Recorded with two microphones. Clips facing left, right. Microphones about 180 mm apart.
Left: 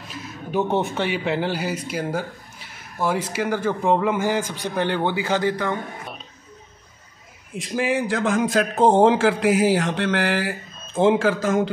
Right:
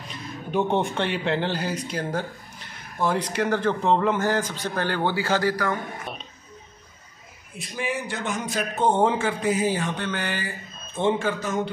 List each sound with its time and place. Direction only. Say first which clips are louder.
0.1 s speech: left 1 dB; 5° left (ahead or behind); by 5.8 s 20° left (ahead or behind)
7.5 s speech: left 7 dB; 90° left